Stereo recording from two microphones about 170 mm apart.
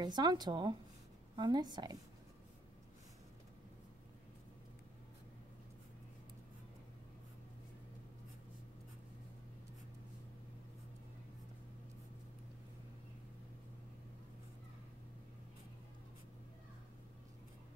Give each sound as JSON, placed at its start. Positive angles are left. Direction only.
{"t": 0.0, "sound": "speech", "side_deg": -25}